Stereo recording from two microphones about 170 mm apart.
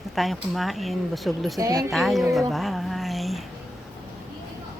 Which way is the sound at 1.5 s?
20° right (ahead or behind).